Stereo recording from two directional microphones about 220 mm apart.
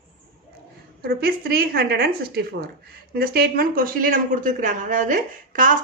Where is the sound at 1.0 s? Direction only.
45° right (ahead or behind).